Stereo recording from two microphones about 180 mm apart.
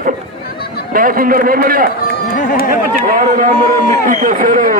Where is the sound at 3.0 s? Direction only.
50° right (ahead or behind).